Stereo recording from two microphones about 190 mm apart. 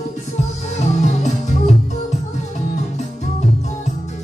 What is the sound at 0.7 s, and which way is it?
Music, 40° left (ahead or behind).